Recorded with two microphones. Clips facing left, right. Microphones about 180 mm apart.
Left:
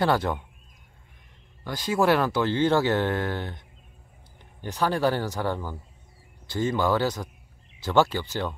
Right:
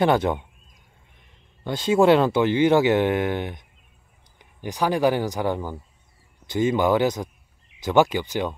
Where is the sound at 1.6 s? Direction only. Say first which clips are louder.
Right 6 dB; 25° right (ahead or behind).